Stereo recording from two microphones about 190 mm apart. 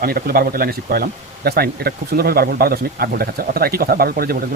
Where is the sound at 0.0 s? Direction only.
50° right (ahead or behind).